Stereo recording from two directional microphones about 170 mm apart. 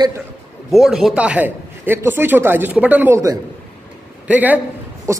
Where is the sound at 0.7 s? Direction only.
Centre (ahead or behind).